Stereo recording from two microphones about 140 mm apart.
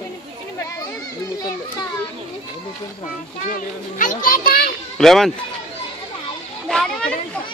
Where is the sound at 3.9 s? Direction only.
75° left (ahead or behind); by 4.7 s 90° left.